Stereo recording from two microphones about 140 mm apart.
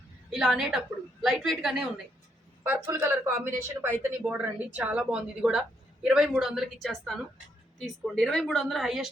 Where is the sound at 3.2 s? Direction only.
15° right (ahead or behind).